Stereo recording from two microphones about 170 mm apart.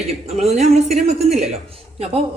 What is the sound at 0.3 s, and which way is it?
Speech, 40° right (ahead or behind).